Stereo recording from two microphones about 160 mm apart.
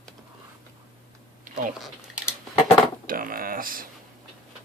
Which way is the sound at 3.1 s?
60° right (ahead or behind).